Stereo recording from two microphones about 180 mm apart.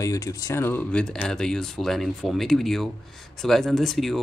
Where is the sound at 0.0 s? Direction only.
15° left (ahead or behind).